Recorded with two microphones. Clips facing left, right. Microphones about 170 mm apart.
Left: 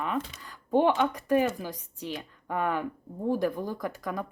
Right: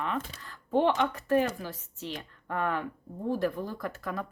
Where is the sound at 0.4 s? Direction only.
15° left (ahead or behind).